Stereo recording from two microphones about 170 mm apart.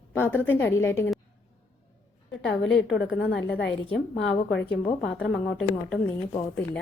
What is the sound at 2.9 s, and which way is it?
Speech, 90° left.